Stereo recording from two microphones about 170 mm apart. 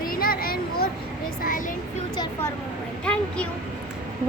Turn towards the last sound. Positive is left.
turn(degrees=5)  # may be behind; listen again after turning